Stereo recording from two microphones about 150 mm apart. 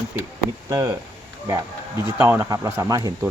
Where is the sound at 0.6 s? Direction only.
25° right (ahead or behind).